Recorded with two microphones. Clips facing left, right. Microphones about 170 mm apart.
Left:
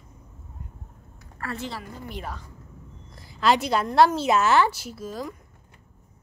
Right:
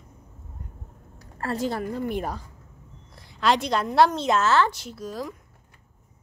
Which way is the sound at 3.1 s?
Centre (ahead or behind).